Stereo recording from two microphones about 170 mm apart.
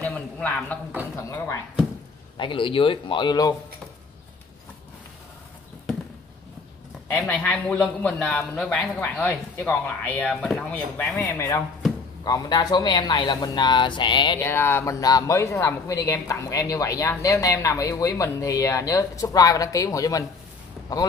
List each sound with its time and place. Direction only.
0.0 s a sound: 10° left (ahead or behind)
1.1 s a man's voice: 15° left (ahead or behind)
2.3 s speech: 30° left (ahead or behind)
7.2 s a man's voice: 10° left (ahead or behind); by 14.4 s 30° left (ahead or behind)
14.4 s speech: 15° left (ahead or behind)